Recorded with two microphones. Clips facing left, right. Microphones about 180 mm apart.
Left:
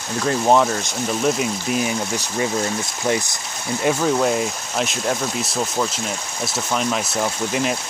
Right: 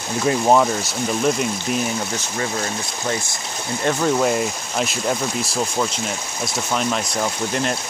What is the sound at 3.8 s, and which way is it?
Speech, 5° left (ahead or behind).